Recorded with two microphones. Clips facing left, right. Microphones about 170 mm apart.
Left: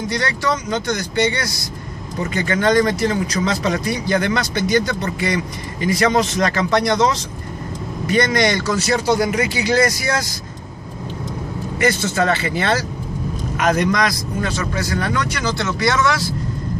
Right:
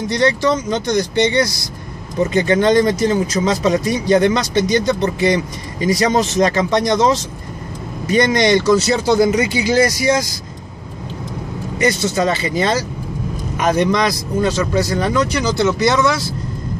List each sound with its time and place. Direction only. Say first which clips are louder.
0.1 s speech: right 8 dB; 25° right (ahead or behind)
8.1 s speech: right 4 dB; 20° right (ahead or behind)
12.4 s speech: right 2 dB; 15° right (ahead or behind)
13.9 s speech: right 3 dB; 25° right (ahead or behind)